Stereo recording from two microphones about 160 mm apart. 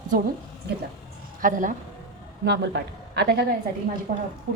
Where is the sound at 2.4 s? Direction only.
90° right.